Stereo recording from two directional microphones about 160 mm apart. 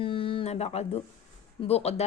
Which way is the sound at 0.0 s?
35° left (ahead or behind).